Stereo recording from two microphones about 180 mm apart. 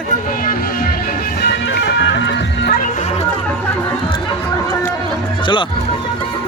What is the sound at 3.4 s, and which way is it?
Chatter, 10° left (ahead or behind).